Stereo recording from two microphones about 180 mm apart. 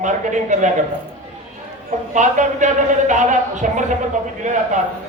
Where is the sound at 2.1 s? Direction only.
45° right (ahead or behind).